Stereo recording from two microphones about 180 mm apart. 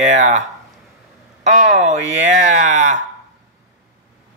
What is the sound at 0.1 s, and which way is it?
Speech, 40° right (ahead or behind).